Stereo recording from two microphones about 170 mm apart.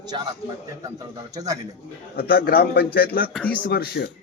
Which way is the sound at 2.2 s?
60° left (ahead or behind).